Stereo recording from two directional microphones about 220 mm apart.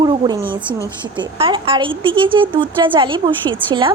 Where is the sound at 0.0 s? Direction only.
20° right (ahead or behind).